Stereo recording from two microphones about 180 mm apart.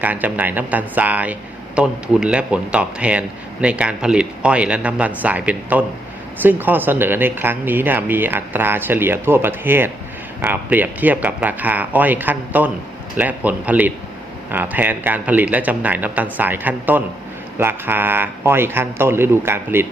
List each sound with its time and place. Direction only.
0.0 s speech: 10° right (ahead or behind)